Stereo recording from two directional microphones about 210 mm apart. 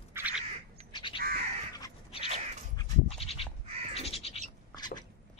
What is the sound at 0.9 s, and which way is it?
Crow, 25° left (ahead or behind).